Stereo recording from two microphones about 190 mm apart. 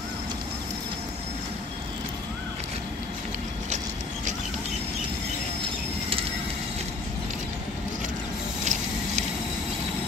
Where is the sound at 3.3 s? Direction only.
40° right (ahead or behind).